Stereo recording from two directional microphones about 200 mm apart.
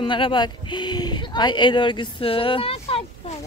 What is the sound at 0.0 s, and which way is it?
Speech, 25° left (ahead or behind).